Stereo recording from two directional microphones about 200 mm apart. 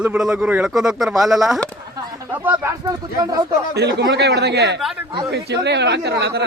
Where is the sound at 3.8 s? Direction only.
55° right (ahead or behind).